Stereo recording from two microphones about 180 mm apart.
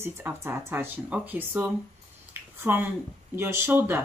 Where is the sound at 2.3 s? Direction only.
10° right (ahead or behind).